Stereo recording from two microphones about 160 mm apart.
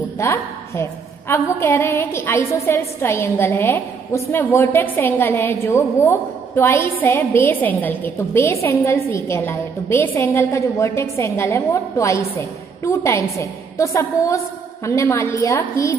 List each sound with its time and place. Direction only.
0.2 s a woman's voice: 15° left (ahead or behind)